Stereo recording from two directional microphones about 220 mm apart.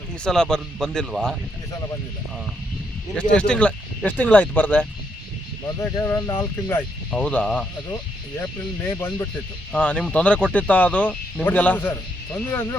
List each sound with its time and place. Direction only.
0.3 s speech: 5° left (ahead or behind)
3.3 s speech: 5° left (ahead or behind)
8.9 s speech: 10° left (ahead or behind)